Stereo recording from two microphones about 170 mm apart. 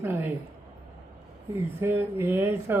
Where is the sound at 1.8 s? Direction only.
15° right (ahead or behind).